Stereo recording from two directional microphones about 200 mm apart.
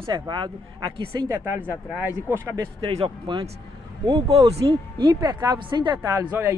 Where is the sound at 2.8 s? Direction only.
25° right (ahead or behind).